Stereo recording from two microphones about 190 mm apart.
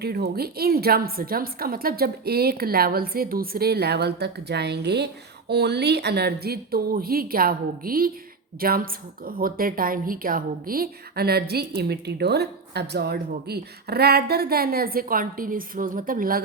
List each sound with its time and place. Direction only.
0.0 s a woman's voice: 55° right (ahead or behind)